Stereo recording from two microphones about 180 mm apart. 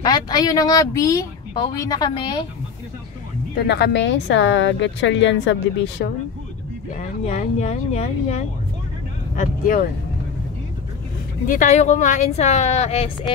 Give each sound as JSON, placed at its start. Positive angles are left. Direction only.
{"t": 0.0, "sound": "speech", "side_deg": 20}
{"t": 3.5, "sound": "a woman's voice", "side_deg": 65}
{"t": 7.0, "sound": "a woman's voice", "side_deg": 40}
{"t": 9.4, "sound": "speech", "side_deg": 50}
{"t": 11.4, "sound": "a woman's voice", "side_deg": 45}